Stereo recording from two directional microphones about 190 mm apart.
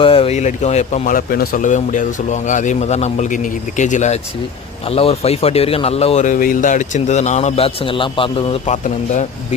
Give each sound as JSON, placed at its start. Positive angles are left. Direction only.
{"t": 0.0, "sound": "speech", "side_deg": 30}